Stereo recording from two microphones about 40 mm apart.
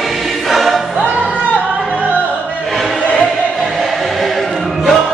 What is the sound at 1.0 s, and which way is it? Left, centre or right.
Music, right.